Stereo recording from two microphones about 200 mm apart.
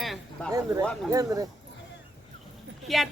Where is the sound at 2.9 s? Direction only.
Centre (ahead or behind).